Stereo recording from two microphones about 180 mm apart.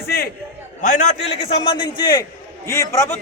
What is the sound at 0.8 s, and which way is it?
Speech, 45° left (ahead or behind).